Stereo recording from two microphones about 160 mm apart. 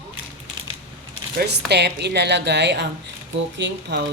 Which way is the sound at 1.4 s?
90° right.